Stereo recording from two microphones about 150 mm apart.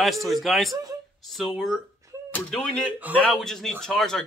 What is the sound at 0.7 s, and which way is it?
Speech, 25° right (ahead or behind).